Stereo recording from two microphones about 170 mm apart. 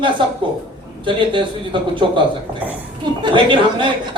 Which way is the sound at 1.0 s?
30° right (ahead or behind).